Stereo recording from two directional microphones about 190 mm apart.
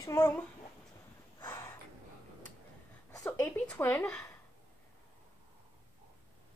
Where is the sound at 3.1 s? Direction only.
15° left (ahead or behind).